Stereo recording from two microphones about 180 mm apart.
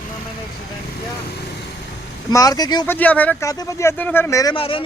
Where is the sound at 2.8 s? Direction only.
10° left (ahead or behind).